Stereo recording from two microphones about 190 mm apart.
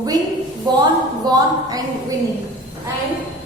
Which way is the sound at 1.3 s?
20° right (ahead or behind).